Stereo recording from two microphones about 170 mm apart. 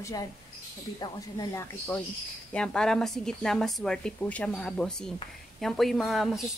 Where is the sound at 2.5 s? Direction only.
5° left (ahead or behind).